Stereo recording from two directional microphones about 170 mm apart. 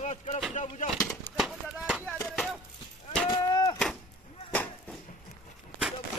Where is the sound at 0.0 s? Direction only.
40° left (ahead or behind).